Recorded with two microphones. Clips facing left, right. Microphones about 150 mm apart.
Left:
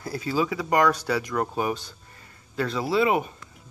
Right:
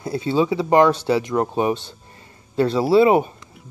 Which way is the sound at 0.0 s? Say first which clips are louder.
Right 6 dB; 25° right (ahead or behind).